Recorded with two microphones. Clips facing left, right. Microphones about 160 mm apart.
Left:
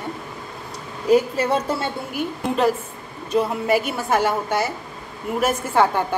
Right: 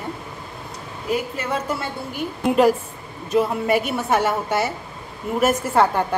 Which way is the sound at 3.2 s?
Centre (ahead or behind).